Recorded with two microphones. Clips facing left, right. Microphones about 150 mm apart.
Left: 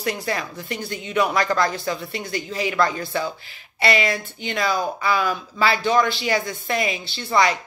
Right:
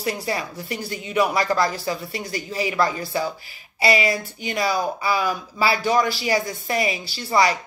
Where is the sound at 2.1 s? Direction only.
35° right (ahead or behind).